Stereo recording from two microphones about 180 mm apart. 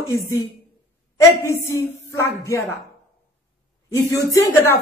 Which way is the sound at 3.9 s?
15° left (ahead or behind).